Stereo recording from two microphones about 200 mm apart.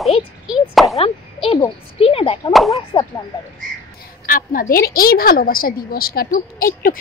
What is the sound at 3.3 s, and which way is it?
Speech, 20° left (ahead or behind).